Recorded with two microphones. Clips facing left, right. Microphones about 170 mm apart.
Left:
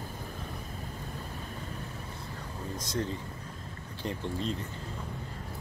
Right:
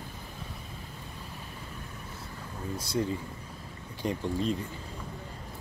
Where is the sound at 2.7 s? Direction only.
10° right (ahead or behind).